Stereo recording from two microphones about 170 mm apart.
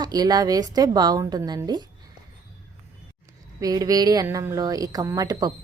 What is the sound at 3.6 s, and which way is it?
A woman's voice, 20° right (ahead or behind).